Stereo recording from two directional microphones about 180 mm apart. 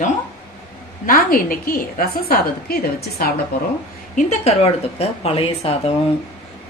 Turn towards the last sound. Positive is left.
turn(degrees=35)  # may be behind; listen again after turning